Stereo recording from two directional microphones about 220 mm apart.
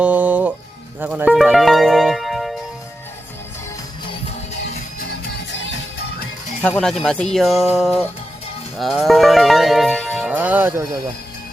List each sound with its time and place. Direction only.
0.0 s music: 5° right (ahead or behind)
4.7 s music: 45° left (ahead or behind)
6.7 s speech: 5° left (ahead or behind)
8.8 s music: centre (ahead or behind)